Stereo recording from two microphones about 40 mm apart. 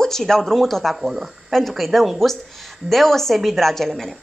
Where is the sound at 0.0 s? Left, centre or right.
Centre.